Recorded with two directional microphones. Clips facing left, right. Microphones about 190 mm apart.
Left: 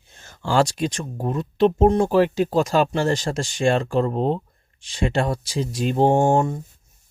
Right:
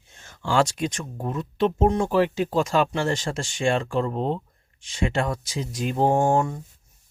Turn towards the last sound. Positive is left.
turn(degrees=25)  # may be behind; listen again after turning